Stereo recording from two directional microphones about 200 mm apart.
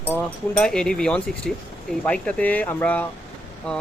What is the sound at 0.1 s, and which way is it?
Speech, 5° left (ahead or behind).